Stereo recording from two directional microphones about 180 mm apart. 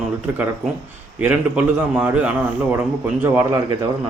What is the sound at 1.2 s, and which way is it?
A man's voice, 5° right (ahead or behind).